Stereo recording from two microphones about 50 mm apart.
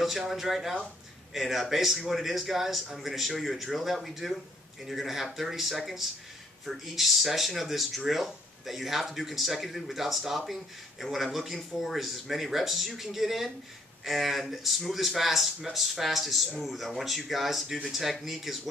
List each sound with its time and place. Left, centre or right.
0.0 s speech: centre